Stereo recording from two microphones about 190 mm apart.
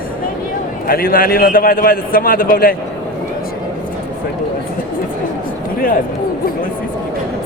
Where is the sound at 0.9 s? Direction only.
50° left (ahead or behind).